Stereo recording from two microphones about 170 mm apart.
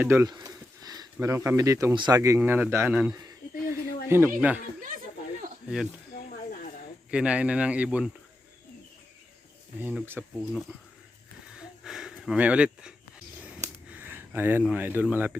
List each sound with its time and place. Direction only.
0.0 s speech: 15° right (ahead or behind)
3.7 s a sound: 15° right (ahead or behind)
4.4 s speech: 10° right (ahead or behind)
4.8 s chatter: 55° right (ahead or behind)
5.6 s speech: 5° right (ahead or behind)
6.1 s a sound: 55° left (ahead or behind)
7.1 s speech: 5° right (ahead or behind)
9.8 s speech: 10° right (ahead or behind)
11.5 s a sound: 5° right (ahead or behind)
14.7 s speech: 10° right (ahead or behind)